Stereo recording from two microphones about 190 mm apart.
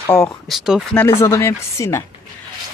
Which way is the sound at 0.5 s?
Centre (ahead or behind).